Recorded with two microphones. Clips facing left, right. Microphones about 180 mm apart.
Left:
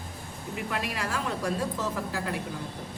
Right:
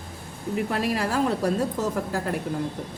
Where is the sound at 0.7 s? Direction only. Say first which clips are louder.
Right 6 dB; 40° right (ahead or behind).